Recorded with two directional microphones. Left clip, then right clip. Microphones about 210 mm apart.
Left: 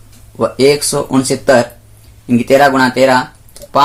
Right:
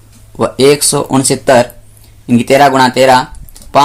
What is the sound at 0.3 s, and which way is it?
Speech, 45° right (ahead or behind).